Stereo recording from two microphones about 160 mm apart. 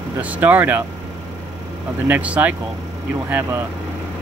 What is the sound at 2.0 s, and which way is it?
Speech, 10° right (ahead or behind).